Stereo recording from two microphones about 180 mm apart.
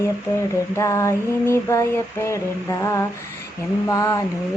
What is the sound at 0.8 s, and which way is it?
Mantra, 15° left (ahead or behind).